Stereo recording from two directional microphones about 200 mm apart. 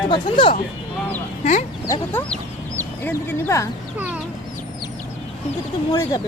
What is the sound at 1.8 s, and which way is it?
A child's voice, 15° left (ahead or behind).